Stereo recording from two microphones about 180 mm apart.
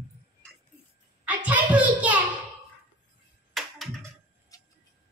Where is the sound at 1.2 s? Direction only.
10° right (ahead or behind).